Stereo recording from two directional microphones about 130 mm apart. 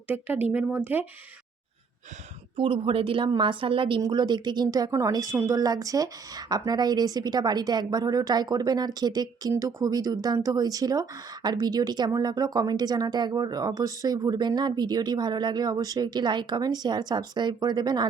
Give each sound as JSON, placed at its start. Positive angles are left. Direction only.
{"t": 0.1, "sound": "speech", "side_deg": -15}
{"t": 2.6, "sound": "a woman's voice", "side_deg": -40}